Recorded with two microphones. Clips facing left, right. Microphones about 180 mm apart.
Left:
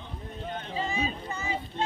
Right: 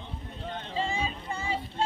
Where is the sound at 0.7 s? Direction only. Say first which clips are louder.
Even; 30° right (ahead or behind).